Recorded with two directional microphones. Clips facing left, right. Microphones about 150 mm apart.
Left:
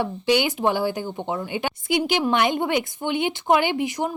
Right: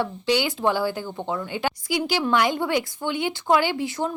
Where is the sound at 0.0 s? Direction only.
15° left (ahead or behind).